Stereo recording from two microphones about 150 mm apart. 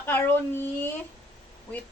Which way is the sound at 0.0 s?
15° left (ahead or behind).